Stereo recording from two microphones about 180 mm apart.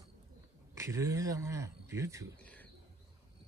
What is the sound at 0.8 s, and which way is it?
Speech, 15° right (ahead or behind).